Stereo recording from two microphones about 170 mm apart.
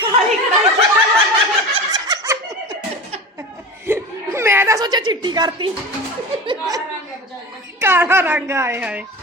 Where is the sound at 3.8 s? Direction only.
15° right (ahead or behind).